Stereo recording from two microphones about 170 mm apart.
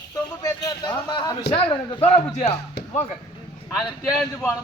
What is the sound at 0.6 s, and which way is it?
A man's voice, 25° left (ahead or behind).